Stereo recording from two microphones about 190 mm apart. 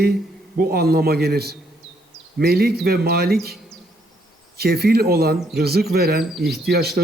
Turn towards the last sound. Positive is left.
turn(degrees=-55)  # may be behind; listen again after turning